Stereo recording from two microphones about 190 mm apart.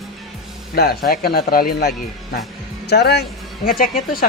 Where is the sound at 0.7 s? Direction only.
55° left (ahead or behind).